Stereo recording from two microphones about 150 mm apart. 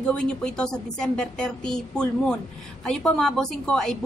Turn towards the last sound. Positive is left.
turn(degrees=5)  # may be behind; listen again after turning